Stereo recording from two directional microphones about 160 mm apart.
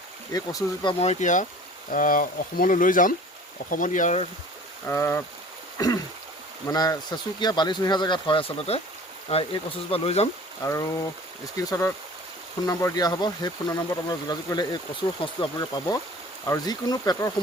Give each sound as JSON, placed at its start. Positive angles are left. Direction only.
{"t": 0.3, "sound": "speech", "side_deg": 25}
{"t": 0.9, "sound": "speech", "side_deg": 40}
{"t": 4.9, "sound": "speech", "side_deg": 15}
{"t": 5.7, "sound": "throat clearing", "side_deg": 20}
{"t": 6.7, "sound": "speech", "side_deg": 25}
{"t": 10.6, "sound": "speech", "side_deg": 20}